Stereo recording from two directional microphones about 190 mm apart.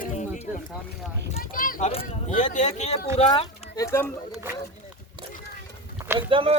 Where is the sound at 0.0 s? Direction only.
40° left (ahead or behind).